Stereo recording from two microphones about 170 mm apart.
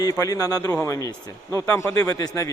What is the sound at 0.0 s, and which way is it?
A man's voice, 20° left (ahead or behind).